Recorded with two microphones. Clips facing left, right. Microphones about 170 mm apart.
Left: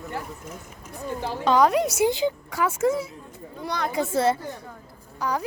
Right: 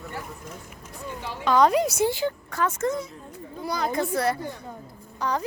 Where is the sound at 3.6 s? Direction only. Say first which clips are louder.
Even; 5° right (ahead or behind).